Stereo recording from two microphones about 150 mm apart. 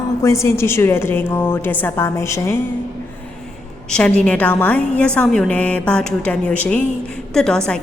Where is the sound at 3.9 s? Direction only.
5° left (ahead or behind).